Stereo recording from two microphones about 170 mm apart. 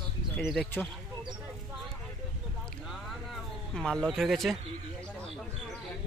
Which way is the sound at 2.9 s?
Centre (ahead or behind).